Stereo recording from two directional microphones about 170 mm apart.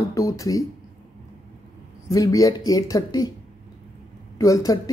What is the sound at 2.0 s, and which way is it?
Speech, 20° left (ahead or behind).